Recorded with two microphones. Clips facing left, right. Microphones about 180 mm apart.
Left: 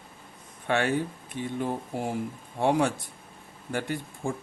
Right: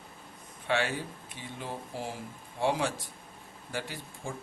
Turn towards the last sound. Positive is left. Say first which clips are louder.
# left 8 dB
turn(degrees=55)  # may be behind; listen again after turning